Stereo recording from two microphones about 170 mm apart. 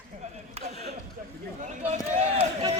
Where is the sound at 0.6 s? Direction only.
40° right (ahead or behind).